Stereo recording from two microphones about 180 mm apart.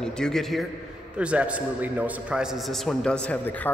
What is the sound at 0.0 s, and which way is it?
A man's voice, 5° left (ahead or behind).